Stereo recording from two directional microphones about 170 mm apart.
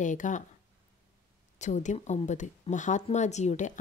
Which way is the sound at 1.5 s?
45° left (ahead or behind).